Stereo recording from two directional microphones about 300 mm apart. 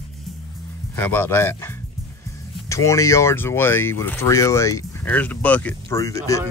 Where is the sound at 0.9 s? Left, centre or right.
Centre.